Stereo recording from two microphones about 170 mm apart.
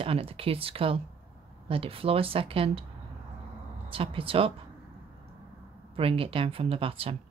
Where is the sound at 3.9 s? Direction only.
30° right (ahead or behind).